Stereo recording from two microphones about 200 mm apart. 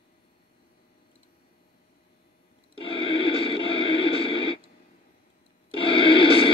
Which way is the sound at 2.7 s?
25° left (ahead or behind).